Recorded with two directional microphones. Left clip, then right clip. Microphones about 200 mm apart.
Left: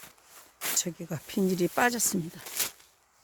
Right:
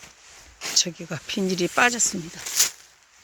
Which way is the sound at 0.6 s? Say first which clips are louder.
Right 8 dB; 15° left (ahead or behind).